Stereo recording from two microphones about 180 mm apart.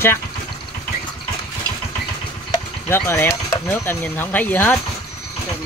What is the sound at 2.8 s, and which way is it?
Speech, 15° left (ahead or behind).